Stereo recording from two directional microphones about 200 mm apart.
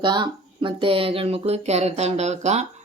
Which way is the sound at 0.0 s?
25° right (ahead or behind).